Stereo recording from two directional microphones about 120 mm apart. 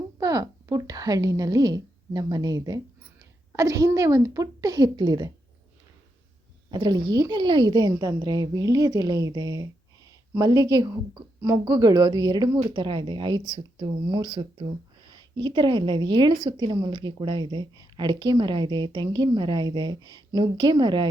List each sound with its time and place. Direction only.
0.2 s a woman's voice: 30° right (ahead or behind)
6.7 s speech: 35° right (ahead or behind)